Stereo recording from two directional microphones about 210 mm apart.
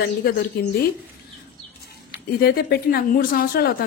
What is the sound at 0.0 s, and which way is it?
Speech, 50° left (ahead or behind).